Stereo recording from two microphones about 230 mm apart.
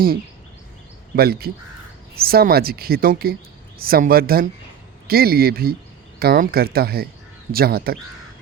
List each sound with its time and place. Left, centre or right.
1.1 s speech: right